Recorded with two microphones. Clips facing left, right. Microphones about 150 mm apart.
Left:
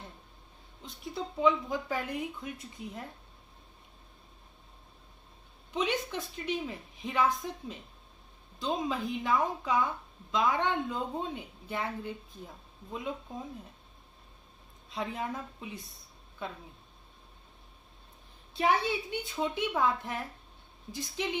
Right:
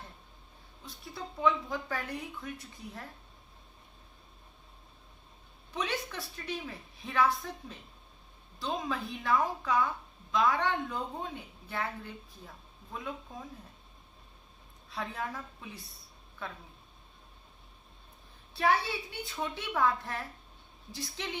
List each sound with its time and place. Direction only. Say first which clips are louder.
0.8 s speech: left 5 dB; 20° left (ahead or behind)
5.7 s speech: left 4 dB; 20° left (ahead or behind)
14.8 s speech: left 2 dB; 20° left (ahead or behind)
18.5 s speech: left 1 dB; 20° left (ahead or behind)